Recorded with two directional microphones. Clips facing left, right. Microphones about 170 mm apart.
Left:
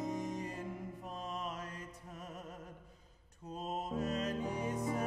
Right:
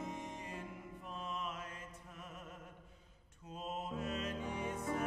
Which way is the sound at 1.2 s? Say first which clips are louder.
Left 1 dB; 40° left (ahead or behind).